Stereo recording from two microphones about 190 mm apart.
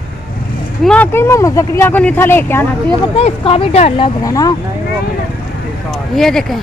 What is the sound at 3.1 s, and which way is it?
Speech, 30° left (ahead or behind).